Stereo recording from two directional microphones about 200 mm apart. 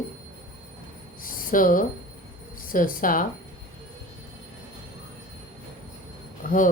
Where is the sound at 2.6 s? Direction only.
45° left (ahead or behind).